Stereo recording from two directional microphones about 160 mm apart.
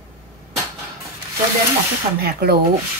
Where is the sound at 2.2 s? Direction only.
80° right.